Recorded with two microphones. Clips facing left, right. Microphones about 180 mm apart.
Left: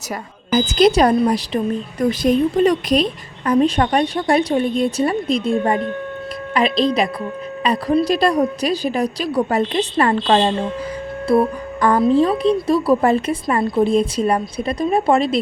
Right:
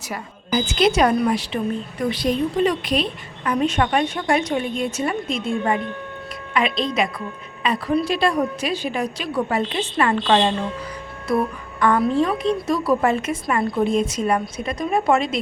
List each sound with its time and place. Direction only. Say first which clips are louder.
0.1 s a woman's voice: left 4 dB; 40° left (ahead or behind)